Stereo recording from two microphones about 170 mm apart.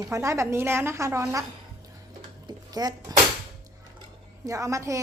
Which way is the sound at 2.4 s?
25° right (ahead or behind).